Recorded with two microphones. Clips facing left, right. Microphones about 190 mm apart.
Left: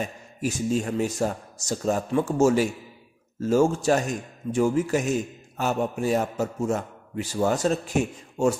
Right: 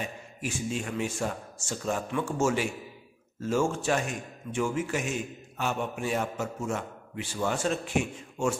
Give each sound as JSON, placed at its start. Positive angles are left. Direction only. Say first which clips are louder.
{"t": 0.0, "sound": "a man's voice", "louder": "left 6 dB", "side_deg": 40}